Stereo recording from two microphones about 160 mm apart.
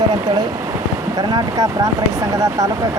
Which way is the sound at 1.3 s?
25° right (ahead or behind).